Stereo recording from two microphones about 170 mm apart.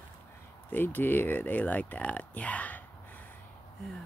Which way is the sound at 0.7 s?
10° left (ahead or behind).